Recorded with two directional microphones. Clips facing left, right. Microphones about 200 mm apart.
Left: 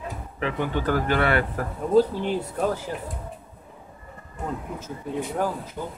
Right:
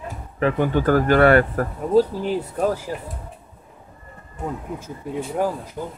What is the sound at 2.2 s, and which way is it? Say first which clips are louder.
Speech: right 3 dB; 10° right (ahead or behind).